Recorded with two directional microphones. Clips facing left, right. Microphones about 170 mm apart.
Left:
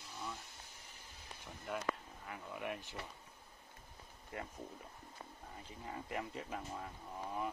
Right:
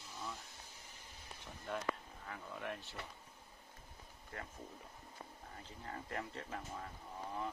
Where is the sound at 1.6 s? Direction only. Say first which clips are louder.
Even; 5° left (ahead or behind).